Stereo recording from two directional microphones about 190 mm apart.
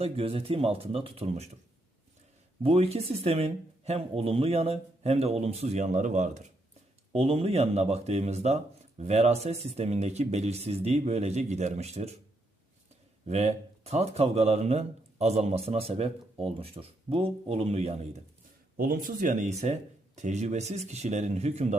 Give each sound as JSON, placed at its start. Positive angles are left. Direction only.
{"t": 0.0, "sound": "speech", "side_deg": -30}
{"t": 2.6, "sound": "speech", "side_deg": -30}
{"t": 13.2, "sound": "speech", "side_deg": -35}
{"t": 18.8, "sound": "speech", "side_deg": -45}